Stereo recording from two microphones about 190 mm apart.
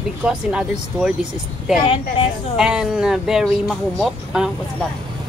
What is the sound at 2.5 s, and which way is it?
Speech, 5° right (ahead or behind).